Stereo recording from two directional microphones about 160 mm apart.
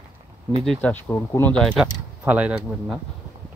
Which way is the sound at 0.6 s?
5° left (ahead or behind).